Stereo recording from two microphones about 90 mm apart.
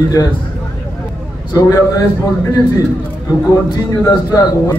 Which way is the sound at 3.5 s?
40° left (ahead or behind).